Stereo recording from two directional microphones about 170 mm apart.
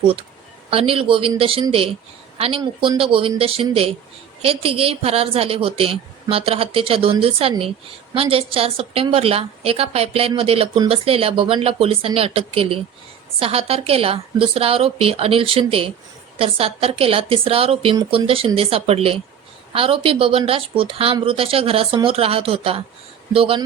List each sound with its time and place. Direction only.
0.7 s a woman's voice: 35° right (ahead or behind)